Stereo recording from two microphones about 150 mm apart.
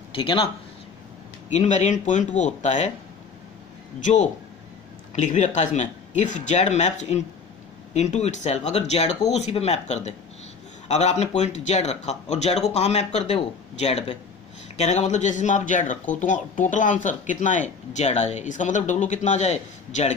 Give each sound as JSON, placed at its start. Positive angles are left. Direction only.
{"t": 0.1, "sound": "speech", "side_deg": 35}
{"t": 1.5, "sound": "speech", "side_deg": 50}
{"t": 4.0, "sound": "speech", "side_deg": 55}